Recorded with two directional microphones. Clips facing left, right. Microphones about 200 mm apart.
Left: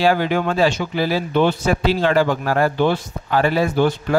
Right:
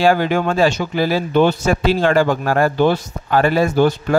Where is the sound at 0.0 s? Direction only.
45° right (ahead or behind).